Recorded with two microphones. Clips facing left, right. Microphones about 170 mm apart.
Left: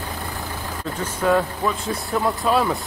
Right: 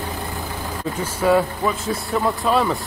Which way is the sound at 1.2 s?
Centre (ahead or behind).